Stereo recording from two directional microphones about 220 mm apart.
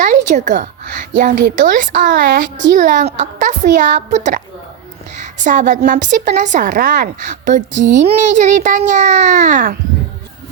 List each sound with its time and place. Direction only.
0.3 s a woman's voice: 35° right (ahead or behind)
7.7 s a child's voice: 55° right (ahead or behind)
8.0 s a woman's voice: 30° right (ahead or behind)